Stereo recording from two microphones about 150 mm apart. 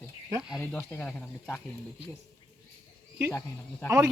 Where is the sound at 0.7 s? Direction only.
15° left (ahead or behind).